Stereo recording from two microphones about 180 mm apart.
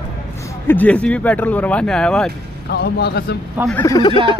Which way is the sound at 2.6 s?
65° left (ahead or behind).